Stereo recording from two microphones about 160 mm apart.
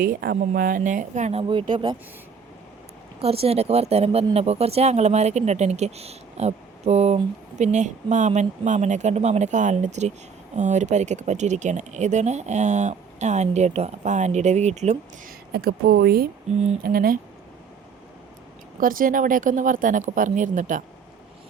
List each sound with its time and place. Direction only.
0.0 s speech: 65° right (ahead or behind); by 2.0 s 30° right (ahead or behind)
3.2 s speech: 40° right (ahead or behind)
15.5 s speech: 75° right (ahead or behind)
18.8 s speech: 60° right (ahead or behind)